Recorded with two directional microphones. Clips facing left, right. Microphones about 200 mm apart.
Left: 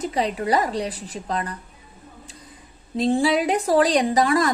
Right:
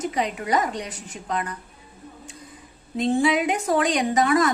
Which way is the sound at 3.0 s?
35° left (ahead or behind).